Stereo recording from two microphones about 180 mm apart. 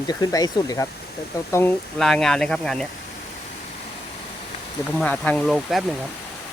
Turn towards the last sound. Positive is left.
turn(degrees=0)  # may be behind; listen again after turning